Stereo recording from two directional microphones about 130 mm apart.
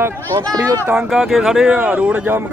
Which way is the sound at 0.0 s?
20° right (ahead or behind).